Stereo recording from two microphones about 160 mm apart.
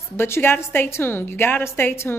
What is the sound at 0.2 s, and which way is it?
A woman's voice, 15° left (ahead or behind).